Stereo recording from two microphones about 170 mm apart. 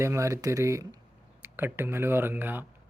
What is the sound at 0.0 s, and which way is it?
Speech, 15° right (ahead or behind).